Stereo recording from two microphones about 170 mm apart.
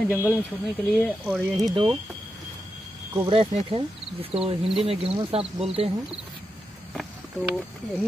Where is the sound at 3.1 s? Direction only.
30° right (ahead or behind).